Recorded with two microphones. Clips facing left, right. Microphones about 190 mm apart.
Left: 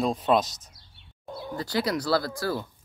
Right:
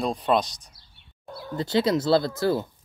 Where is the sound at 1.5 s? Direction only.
25° right (ahead or behind).